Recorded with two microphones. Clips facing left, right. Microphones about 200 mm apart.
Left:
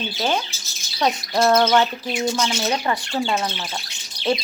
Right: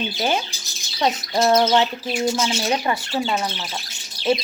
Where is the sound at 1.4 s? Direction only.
15° right (ahead or behind).